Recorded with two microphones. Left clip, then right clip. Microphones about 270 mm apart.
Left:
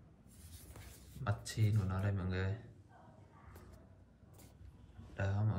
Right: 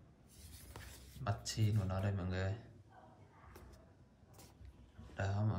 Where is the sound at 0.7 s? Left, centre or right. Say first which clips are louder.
Right 3 dB; centre.